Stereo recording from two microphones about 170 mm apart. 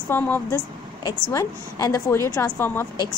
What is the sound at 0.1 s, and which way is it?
A woman's voice, 15° left (ahead or behind).